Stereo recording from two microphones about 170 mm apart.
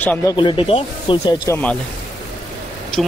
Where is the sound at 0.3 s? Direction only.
30° left (ahead or behind).